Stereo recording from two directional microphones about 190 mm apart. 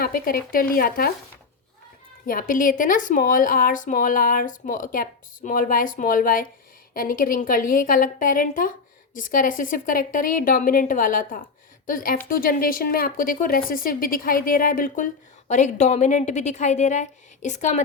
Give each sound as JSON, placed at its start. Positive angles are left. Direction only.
{"t": 0.0, "sound": "speech", "side_deg": 50}
{"t": 2.2, "sound": "speech", "side_deg": 45}